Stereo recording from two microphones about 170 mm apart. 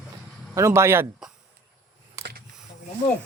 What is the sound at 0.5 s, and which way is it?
Speech, 15° right (ahead or behind).